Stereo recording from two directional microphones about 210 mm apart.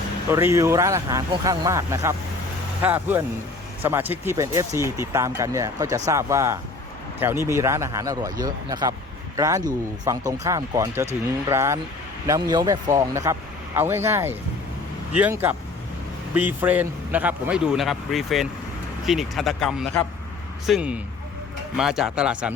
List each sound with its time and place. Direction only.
0.3 s a man's voice: 15° right (ahead or behind)